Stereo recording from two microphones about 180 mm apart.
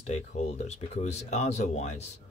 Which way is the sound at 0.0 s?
40° left (ahead or behind).